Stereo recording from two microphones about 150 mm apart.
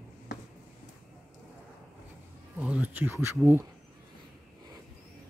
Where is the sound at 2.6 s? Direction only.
10° right (ahead or behind).